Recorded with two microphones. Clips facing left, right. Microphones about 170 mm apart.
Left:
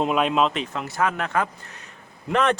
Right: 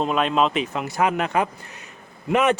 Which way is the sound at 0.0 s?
5° left (ahead or behind).